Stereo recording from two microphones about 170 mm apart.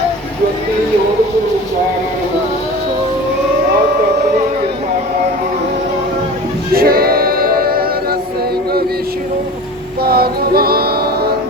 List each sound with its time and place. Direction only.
6.7 s music: 60° right (ahead or behind)
10.0 s female singing: 65° right (ahead or behind)